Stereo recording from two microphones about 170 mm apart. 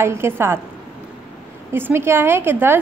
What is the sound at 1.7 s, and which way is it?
A woman's voice, 15° right (ahead or behind).